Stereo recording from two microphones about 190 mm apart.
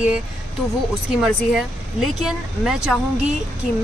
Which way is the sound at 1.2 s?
Centre (ahead or behind).